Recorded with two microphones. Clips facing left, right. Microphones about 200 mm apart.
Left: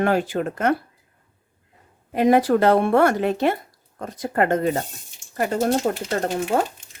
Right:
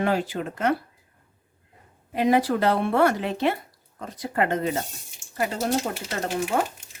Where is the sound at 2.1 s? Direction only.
50° left (ahead or behind).